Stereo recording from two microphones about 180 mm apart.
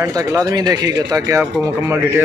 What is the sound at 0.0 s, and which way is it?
A man's voice, 15° right (ahead or behind).